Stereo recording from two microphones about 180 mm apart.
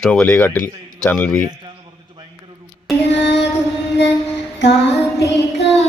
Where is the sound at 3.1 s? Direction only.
75° left (ahead or behind).